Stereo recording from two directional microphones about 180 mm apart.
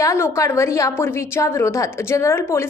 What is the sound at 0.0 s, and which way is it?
A woman's voice, 15° left (ahead or behind).